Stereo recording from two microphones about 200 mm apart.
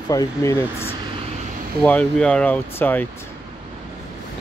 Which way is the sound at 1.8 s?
5° left (ahead or behind).